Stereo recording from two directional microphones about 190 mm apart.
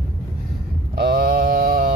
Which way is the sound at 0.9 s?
55° right (ahead or behind).